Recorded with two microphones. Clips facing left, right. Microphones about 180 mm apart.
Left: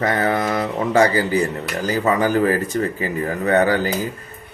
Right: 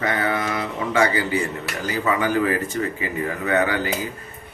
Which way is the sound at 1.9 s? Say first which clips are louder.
Left 4 dB; 35° left (ahead or behind).